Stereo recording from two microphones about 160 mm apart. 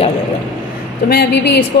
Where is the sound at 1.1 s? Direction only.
90° left.